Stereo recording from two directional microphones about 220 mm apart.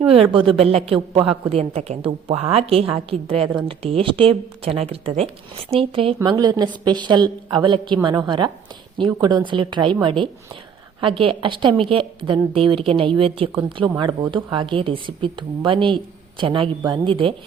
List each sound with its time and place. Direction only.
0.0 s a woman's voice: 25° right (ahead or behind)